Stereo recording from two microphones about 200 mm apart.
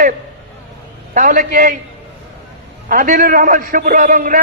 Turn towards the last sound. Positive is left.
turn(degrees=-40)  # may be behind; listen again after turning